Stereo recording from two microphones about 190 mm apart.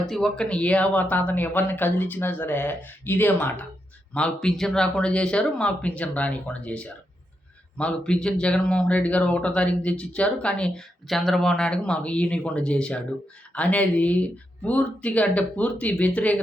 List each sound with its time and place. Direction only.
0.1 s speech: 5° left (ahead or behind)